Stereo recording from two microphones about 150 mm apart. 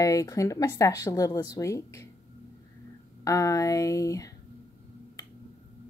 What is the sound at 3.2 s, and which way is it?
A woman's voice, 20° left (ahead or behind).